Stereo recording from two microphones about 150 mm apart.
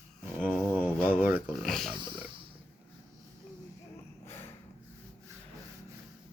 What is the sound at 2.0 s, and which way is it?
Speech, 30° right (ahead or behind).